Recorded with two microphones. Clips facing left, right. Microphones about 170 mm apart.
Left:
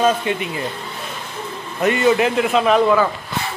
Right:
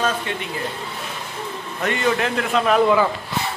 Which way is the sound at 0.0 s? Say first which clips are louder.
Left 6 dB; 15° left (ahead or behind).